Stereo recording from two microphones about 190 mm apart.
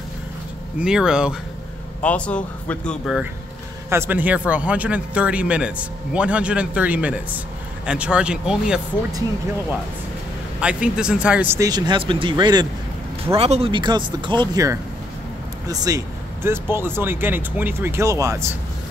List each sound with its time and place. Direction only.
0.7 s speech: 5° right (ahead or behind)
2.0 s speech: 5° left (ahead or behind)
3.9 s a man's voice: 10° right (ahead or behind)
10.6 s a man's voice: 5° right (ahead or behind)